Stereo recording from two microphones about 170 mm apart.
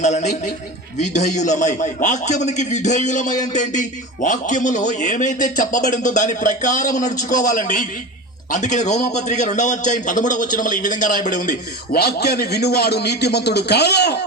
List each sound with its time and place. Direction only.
0.0 s a man's voice: 45° left (ahead or behind); by 14.3 s 80° left